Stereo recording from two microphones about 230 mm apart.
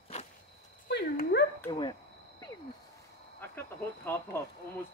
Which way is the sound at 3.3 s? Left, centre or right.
Centre.